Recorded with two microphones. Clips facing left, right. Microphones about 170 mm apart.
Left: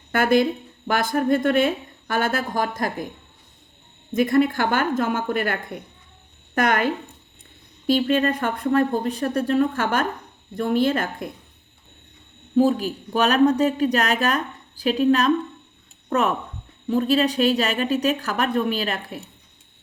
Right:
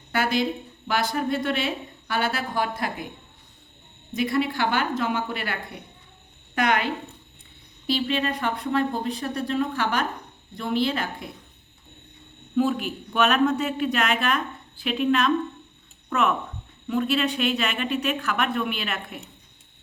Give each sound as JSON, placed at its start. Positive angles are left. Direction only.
{"t": 0.1, "sound": "a woman's voice", "side_deg": 50}
{"t": 4.1, "sound": "a woman's voice", "side_deg": 50}
{"t": 12.5, "sound": "speech", "side_deg": 35}